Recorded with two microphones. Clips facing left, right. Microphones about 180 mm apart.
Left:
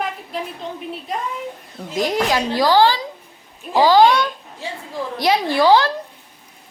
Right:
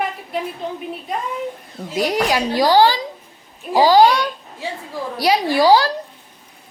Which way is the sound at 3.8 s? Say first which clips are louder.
Right 1 dB; 40° right (ahead or behind).